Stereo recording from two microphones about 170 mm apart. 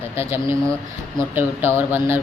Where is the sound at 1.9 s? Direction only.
15° right (ahead or behind).